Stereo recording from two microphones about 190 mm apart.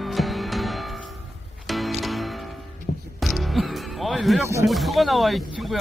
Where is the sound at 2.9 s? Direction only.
55° left (ahead or behind).